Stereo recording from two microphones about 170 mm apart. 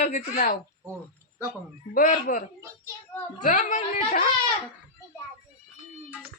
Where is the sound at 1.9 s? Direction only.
55° left (ahead or behind).